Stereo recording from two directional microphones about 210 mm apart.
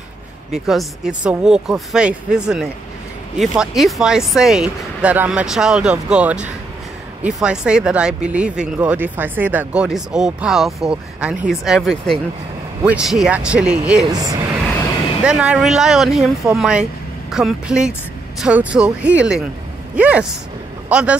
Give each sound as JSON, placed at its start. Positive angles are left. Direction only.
{"t": 0.7, "sound": "speech", "side_deg": 0}
{"t": 14.0, "sound": "speech", "side_deg": -20}
{"t": 15.2, "sound": "speech", "side_deg": -5}